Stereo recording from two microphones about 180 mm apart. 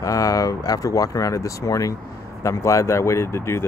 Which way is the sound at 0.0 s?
20° left (ahead or behind).